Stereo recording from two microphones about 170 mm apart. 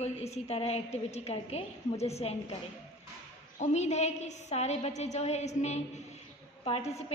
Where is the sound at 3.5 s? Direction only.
40° left (ahead or behind).